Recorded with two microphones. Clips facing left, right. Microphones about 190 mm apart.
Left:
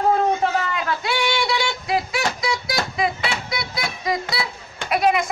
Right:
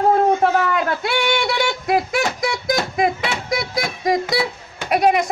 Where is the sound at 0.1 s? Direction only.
55° right (ahead or behind).